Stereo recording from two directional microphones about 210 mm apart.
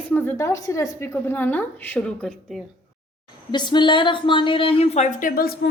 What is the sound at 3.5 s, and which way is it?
A woman's voice, 20° left (ahead or behind).